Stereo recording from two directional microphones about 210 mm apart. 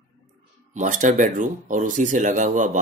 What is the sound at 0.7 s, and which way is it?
Speech, 35° right (ahead or behind).